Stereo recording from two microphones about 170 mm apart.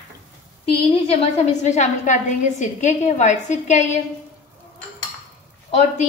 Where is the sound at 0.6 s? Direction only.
35° left (ahead or behind).